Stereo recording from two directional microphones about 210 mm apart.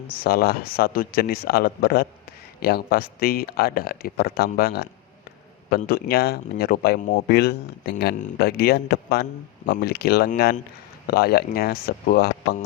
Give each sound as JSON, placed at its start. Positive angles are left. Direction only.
{"t": 0.1, "sound": "speech", "side_deg": 45}